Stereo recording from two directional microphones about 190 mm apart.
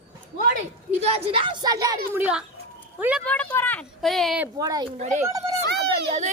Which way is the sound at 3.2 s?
5° left (ahead or behind).